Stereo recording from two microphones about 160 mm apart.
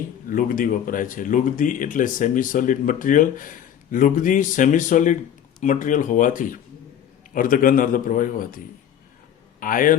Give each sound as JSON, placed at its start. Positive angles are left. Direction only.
{"t": 0.3, "sound": "a man's voice", "side_deg": 60}